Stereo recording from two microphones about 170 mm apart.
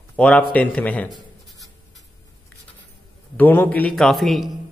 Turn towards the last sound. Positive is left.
turn(degrees=0)  # may be behind; listen again after turning